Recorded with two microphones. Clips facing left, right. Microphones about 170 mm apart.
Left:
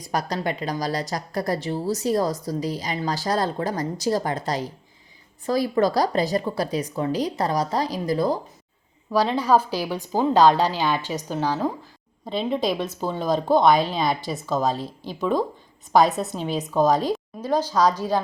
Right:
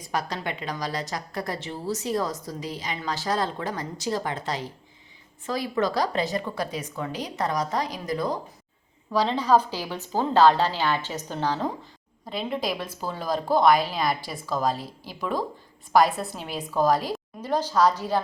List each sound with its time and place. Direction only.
0.0 s a woman's voice: 40° left (ahead or behind)
9.1 s a woman's voice: 10° left (ahead or behind)
12.5 s a woman's voice: 25° left (ahead or behind)
14.7 s speech: 5° right (ahead or behind)
15.9 s a woman's voice: 20° left (ahead or behind)